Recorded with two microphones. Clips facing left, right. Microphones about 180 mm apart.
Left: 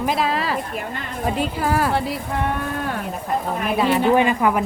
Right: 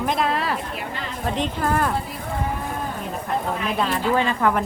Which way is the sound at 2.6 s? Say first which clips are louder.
Left 3 dB; 75° left (ahead or behind).